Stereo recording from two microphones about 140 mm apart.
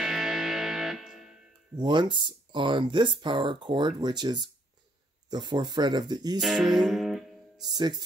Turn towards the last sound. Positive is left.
turn(degrees=-30)  # may be behind; listen again after turning